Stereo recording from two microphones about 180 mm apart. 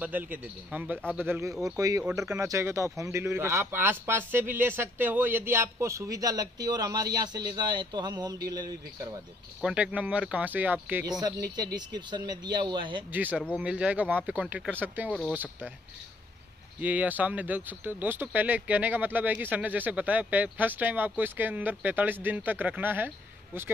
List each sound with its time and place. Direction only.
0.0 s speech: 10° right (ahead or behind)
9.6 s speech: 5° right (ahead or behind)
11.1 s speech: 20° right (ahead or behind)
13.1 s speech: 10° right (ahead or behind)
16.8 s speech: 10° right (ahead or behind)